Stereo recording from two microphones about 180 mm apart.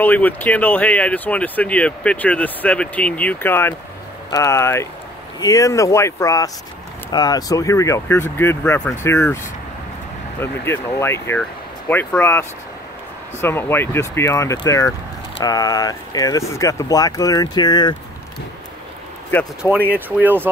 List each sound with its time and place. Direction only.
0.0 s speech: 10° left (ahead or behind)
10.4 s speech: 15° left (ahead or behind)
19.6 s speech: 10° left (ahead or behind)
20.1 s speech: 10° right (ahead or behind)